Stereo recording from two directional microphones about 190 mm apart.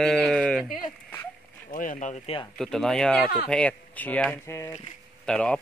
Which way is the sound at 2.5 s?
5° left (ahead or behind).